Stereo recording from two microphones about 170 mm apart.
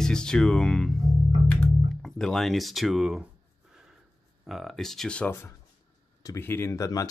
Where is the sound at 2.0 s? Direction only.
5° left (ahead or behind).